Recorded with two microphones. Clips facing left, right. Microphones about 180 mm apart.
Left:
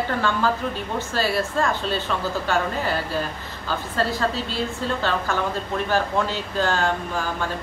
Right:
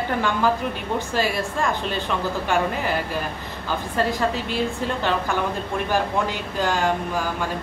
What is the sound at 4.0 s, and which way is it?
Speech, 15° right (ahead or behind).